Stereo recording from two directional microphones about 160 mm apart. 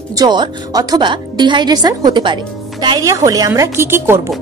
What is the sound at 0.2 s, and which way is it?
A woman's voice, 25° right (ahead or behind).